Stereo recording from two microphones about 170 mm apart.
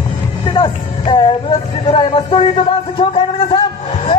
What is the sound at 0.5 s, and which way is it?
Music, 30° left (ahead or behind).